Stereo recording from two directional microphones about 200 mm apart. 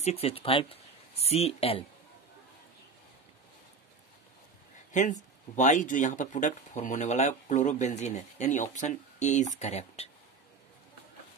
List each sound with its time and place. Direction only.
0.0 s speech: 30° left (ahead or behind)
4.9 s speech: 35° left (ahead or behind)